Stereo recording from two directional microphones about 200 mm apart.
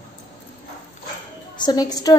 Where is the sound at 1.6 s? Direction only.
20° left (ahead or behind).